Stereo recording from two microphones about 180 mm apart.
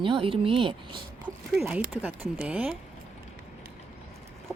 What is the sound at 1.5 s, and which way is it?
Speech, 5° right (ahead or behind).